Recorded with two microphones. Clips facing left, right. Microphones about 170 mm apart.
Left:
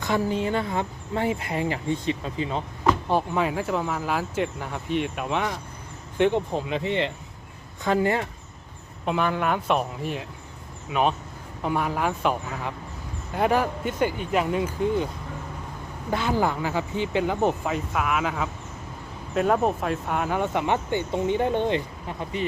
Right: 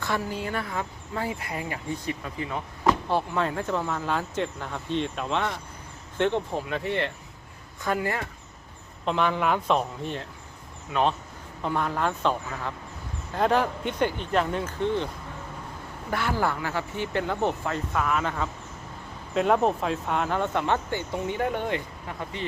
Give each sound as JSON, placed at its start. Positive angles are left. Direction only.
{"t": 0.0, "sound": "speech", "side_deg": 20}
{"t": 9.0, "sound": "speech", "side_deg": 5}
{"t": 11.6, "sound": "speech", "side_deg": 10}